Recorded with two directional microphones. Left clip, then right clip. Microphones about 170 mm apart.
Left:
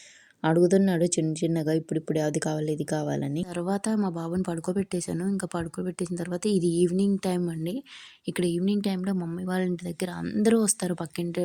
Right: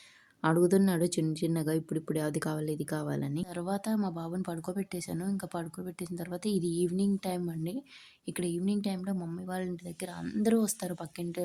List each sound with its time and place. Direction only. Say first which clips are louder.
0.4 s speech: left 5 dB; 20° left (ahead or behind)